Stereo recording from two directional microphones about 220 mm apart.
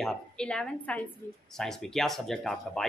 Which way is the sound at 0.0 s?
5° left (ahead or behind).